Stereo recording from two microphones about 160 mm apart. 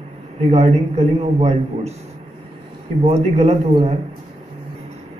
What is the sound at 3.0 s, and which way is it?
Speech, 40° right (ahead or behind).